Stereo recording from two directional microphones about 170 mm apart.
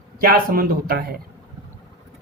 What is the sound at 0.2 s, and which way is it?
Speech, 55° right (ahead or behind).